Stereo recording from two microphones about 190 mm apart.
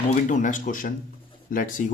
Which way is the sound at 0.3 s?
40° left (ahead or behind).